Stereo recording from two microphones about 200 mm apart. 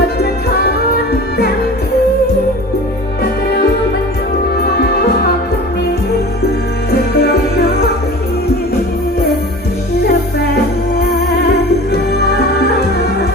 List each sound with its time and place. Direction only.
7.1 s music: 55° left (ahead or behind)
11.4 s music: 55° left (ahead or behind)